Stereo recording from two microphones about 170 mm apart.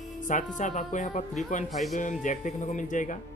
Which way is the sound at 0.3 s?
50° left (ahead or behind).